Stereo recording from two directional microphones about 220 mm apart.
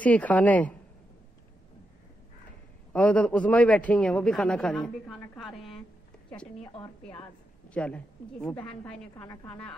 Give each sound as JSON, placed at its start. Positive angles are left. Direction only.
{"t": 0.0, "sound": "a woman's voice", "side_deg": 5}
{"t": 2.9, "sound": "a man's voice", "side_deg": 5}
{"t": 6.6, "sound": "a woman's voice", "side_deg": 25}
{"t": 7.7, "sound": "a man's voice", "side_deg": 5}